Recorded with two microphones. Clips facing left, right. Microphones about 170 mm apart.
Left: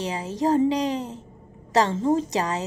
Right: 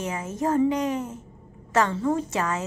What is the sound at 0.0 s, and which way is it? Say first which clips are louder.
A woman's voice: left 2 dB; 35° left (ahead or behind).